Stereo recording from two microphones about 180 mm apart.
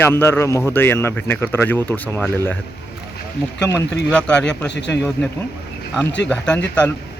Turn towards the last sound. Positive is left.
turn(degrees=5)  # may be behind; listen again after turning